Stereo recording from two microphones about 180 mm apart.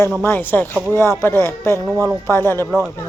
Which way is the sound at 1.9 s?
15° right (ahead or behind).